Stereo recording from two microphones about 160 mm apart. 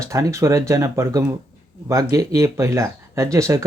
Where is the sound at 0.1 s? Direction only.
20° right (ahead or behind).